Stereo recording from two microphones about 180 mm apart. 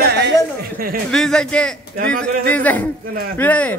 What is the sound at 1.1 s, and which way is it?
A man's voice, 5° left (ahead or behind).